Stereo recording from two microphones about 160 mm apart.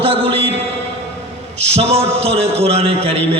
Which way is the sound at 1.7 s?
40° right (ahead or behind).